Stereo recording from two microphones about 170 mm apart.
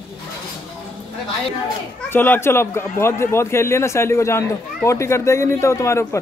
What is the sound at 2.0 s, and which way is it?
A man's voice, 10° left (ahead or behind).